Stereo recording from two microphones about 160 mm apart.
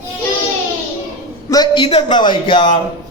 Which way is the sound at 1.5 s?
30° left (ahead or behind).